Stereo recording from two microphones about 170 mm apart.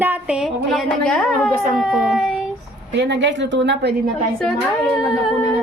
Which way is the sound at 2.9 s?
90° right.